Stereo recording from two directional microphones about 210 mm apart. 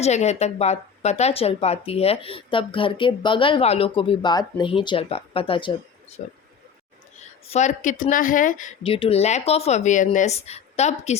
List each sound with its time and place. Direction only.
0.0 s speech: 30° left (ahead or behind)
6.2 s speech: 40° left (ahead or behind)
7.4 s speech: 30° left (ahead or behind)